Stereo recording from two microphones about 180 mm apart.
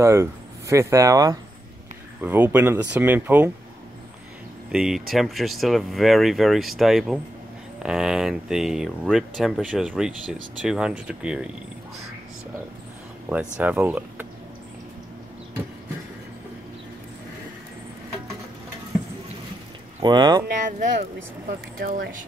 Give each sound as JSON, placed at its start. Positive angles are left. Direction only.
{"t": 0.0, "sound": "speech", "side_deg": -15}
{"t": 4.6, "sound": "speech", "side_deg": -5}
{"t": 13.6, "sound": "speech", "side_deg": -10}
{"t": 20.0, "sound": "speech", "side_deg": -25}
{"t": 20.4, "sound": "speech", "side_deg": -50}